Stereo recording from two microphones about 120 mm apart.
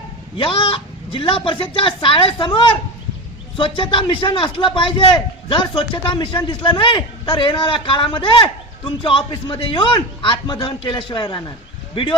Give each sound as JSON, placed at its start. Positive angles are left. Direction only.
{"t": 0.3, "sound": "a man's voice", "side_deg": 45}